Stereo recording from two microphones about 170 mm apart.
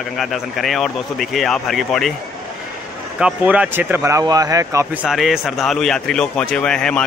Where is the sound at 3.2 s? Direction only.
5° right (ahead or behind).